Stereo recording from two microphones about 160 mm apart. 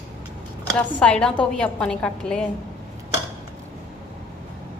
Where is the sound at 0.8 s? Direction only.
5° left (ahead or behind).